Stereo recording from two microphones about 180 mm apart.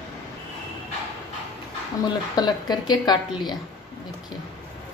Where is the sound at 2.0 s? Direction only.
20° left (ahead or behind).